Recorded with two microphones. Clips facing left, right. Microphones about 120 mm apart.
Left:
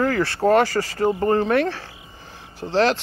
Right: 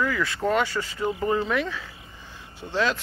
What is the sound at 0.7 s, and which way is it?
Speech, 90° left.